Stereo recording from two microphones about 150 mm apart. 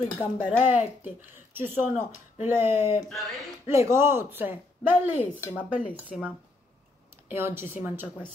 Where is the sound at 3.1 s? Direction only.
Centre (ahead or behind).